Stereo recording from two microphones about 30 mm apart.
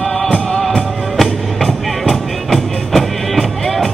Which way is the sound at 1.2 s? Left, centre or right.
Centre.